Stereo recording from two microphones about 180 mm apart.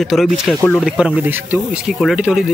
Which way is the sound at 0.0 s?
Centre (ahead or behind).